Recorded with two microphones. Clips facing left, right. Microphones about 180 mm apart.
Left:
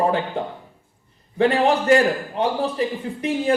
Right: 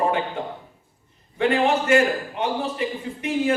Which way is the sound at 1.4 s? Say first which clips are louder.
Left 2 dB; 35° left (ahead or behind).